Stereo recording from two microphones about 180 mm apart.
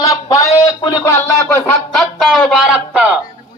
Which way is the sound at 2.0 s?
Centre (ahead or behind).